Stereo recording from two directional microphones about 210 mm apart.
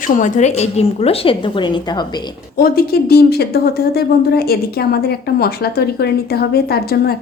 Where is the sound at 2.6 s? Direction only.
45° left (ahead or behind).